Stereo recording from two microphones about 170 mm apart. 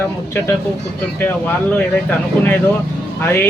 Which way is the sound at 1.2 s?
10° left (ahead or behind).